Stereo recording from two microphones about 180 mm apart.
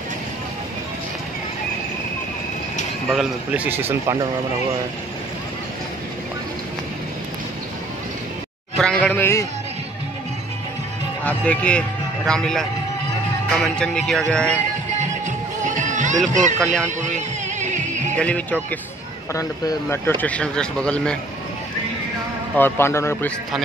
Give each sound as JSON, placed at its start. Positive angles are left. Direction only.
{"t": 3.1, "sound": "speech", "side_deg": -5}
{"t": 8.7, "sound": "speech", "side_deg": 5}
{"t": 11.2, "sound": "speech", "side_deg": 5}
{"t": 13.7, "sound": "speech", "side_deg": 5}
{"t": 15.0, "sound": "music", "side_deg": -40}
{"t": 16.3, "sound": "speech", "side_deg": -40}
{"t": 16.6, "sound": "speech", "side_deg": 5}
{"t": 17.6, "sound": "music", "side_deg": -40}
{"t": 18.1, "sound": "speech", "side_deg": 5}
{"t": 19.3, "sound": "speech", "side_deg": 20}
{"t": 22.6, "sound": "speech", "side_deg": 15}